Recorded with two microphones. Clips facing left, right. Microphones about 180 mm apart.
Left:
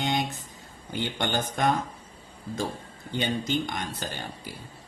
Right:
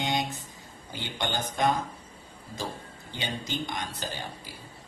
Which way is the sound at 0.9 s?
55° left (ahead or behind).